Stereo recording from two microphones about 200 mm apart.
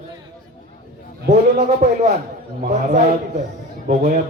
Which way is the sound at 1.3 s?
35° right (ahead or behind).